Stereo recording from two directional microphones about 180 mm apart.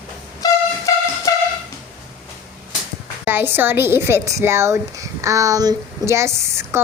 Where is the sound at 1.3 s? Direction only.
20° left (ahead or behind).